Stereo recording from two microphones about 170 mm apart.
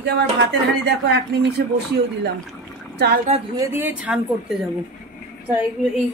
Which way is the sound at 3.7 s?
10° right (ahead or behind).